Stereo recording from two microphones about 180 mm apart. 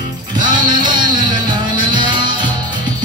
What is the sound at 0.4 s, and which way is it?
Music, 25° right (ahead or behind).